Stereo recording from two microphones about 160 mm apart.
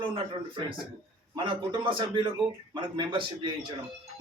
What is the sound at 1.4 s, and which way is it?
A man's voice, 30° right (ahead or behind).